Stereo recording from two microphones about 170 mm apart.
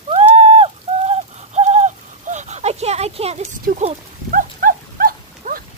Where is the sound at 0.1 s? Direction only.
35° right (ahead or behind).